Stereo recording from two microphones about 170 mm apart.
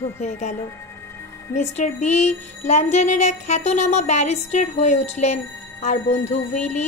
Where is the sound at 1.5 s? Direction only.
45° left (ahead or behind).